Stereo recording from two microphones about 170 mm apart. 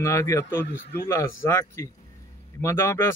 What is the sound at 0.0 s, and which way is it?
Speech, 15° left (ahead or behind).